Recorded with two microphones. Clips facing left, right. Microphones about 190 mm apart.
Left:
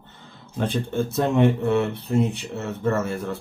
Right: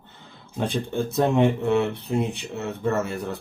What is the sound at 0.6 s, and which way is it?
Speech, 15° right (ahead or behind).